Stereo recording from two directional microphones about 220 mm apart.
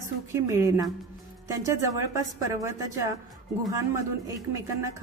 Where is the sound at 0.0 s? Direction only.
15° right (ahead or behind).